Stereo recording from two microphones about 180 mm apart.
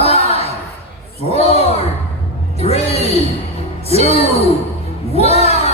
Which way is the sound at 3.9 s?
35° left (ahead or behind).